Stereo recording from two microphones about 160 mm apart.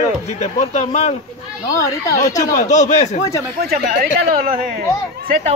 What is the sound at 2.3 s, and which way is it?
Speech, 45° left (ahead or behind).